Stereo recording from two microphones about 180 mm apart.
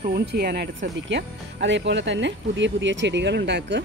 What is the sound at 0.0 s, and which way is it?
Speech, 60° right (ahead or behind).